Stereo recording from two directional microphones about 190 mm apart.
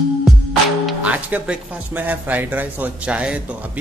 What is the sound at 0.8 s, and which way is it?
Speech, 5° right (ahead or behind).